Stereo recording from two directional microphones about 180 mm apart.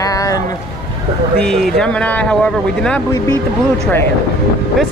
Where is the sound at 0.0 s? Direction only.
20° left (ahead or behind).